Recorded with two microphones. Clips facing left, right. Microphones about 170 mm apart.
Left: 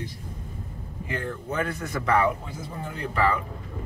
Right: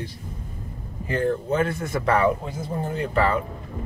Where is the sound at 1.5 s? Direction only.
25° right (ahead or behind).